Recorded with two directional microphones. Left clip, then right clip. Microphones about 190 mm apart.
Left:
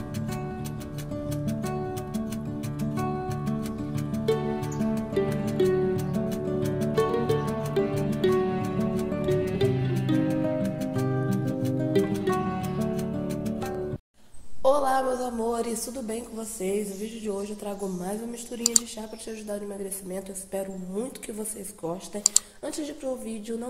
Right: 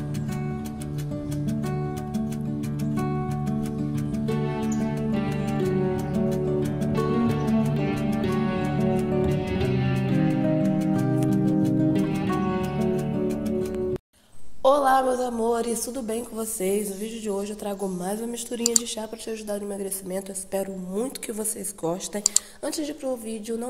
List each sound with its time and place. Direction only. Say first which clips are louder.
1.3 s music: right 1 dB; centre (ahead or behind)
14.6 s a woman's voice: right 4 dB; 25° right (ahead or behind)
19.5 s a woman's voice: right 2 dB; 25° right (ahead or behind)